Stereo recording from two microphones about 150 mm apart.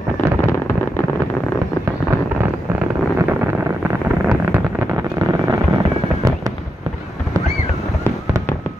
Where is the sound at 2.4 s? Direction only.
15° right (ahead or behind).